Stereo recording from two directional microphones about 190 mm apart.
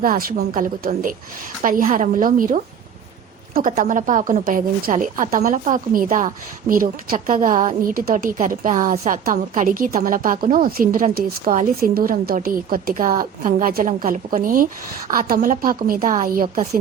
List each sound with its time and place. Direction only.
0.0 s a woman's voice: 50° right (ahead or behind)